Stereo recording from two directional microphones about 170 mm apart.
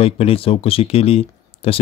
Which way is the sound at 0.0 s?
35° left (ahead or behind).